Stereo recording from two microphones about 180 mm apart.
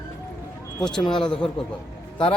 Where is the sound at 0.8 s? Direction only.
5° left (ahead or behind).